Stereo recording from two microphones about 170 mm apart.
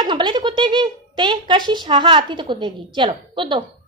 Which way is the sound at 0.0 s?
25° right (ahead or behind).